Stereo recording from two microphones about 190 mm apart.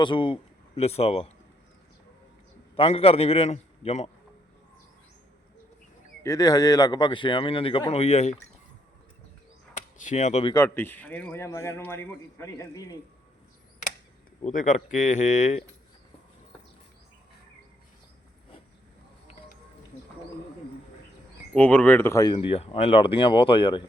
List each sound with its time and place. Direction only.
0.0 s a man's voice: 25° left (ahead or behind)
2.7 s a man's voice: 30° left (ahead or behind)
6.2 s speech: 20° left (ahead or behind); by 8.4 s 35° left (ahead or behind)
9.7 s chop: 40° left (ahead or behind)
10.4 s a man's voice: 15° left (ahead or behind)
14.4 s a man's voice: 40° left (ahead or behind)
21.5 s speech: 5° left (ahead or behind); by 23.8 s 25° left (ahead or behind)